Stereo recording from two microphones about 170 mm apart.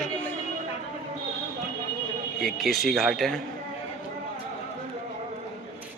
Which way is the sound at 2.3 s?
Centre (ahead or behind).